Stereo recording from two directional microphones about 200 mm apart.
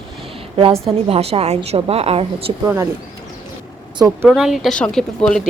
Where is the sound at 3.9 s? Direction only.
20° right (ahead or behind).